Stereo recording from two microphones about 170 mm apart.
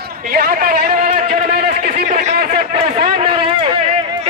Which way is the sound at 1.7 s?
65° right (ahead or behind).